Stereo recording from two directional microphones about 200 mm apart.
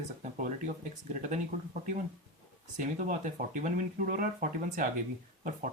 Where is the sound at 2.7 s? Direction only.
40° right (ahead or behind).